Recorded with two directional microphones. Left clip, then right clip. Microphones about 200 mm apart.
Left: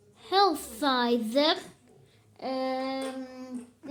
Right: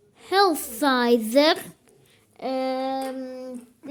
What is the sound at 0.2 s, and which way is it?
A woman's voice, 35° right (ahead or behind).